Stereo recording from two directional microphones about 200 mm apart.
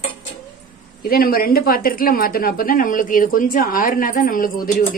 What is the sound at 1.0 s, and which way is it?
A woman's voice, 50° left (ahead or behind).